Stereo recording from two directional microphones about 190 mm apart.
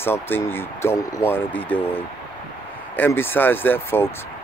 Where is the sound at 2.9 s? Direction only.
10° left (ahead or behind).